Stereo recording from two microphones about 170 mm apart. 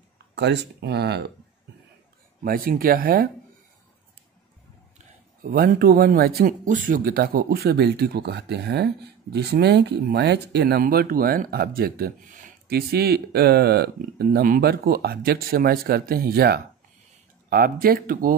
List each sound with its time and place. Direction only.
0.4 s speech: 85° right
2.4 s speech: 60° right (ahead or behind)
5.4 s speech: 60° right (ahead or behind)